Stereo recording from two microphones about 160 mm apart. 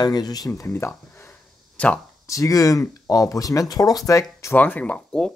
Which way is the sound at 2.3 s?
20° left (ahead or behind).